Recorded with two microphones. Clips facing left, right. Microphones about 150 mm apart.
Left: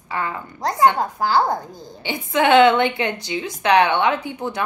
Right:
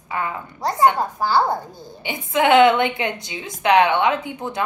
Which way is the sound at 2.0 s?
20° right (ahead or behind).